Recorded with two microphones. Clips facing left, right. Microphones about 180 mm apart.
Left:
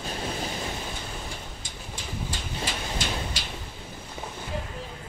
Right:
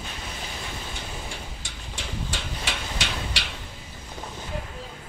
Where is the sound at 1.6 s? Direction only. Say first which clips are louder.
Right 1 dB; 75° right (ahead or behind).